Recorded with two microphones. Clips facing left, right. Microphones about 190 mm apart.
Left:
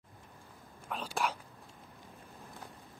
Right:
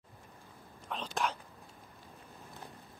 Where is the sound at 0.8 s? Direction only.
10° left (ahead or behind).